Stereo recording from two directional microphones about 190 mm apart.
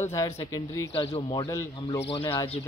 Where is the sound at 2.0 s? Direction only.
30° left (ahead or behind).